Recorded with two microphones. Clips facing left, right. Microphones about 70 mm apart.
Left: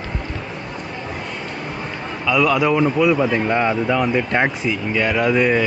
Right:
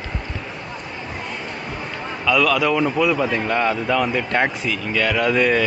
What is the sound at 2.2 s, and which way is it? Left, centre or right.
A man's voice, centre.